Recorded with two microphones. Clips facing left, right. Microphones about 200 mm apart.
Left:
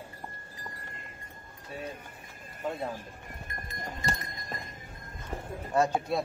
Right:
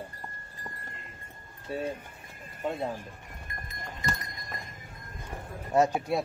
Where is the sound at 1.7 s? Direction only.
30° right (ahead or behind).